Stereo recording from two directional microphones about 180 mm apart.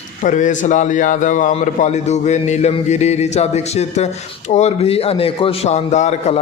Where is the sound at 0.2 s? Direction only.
45° left (ahead or behind).